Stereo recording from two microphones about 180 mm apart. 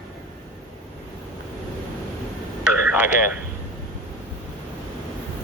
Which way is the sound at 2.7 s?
10° right (ahead or behind).